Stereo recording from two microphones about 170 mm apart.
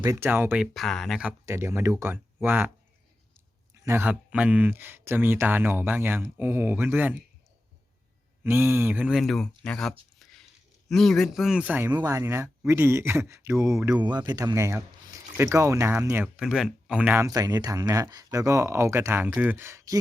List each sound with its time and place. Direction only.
0.0 s speech: 15° right (ahead or behind)
1.5 s speech: 15° right (ahead or behind)
3.8 s speech: 10° right (ahead or behind)
8.4 s speech: 15° right (ahead or behind)
17.2 s speech: 20° right (ahead or behind)